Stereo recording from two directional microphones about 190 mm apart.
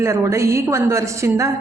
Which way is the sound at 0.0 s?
15° right (ahead or behind).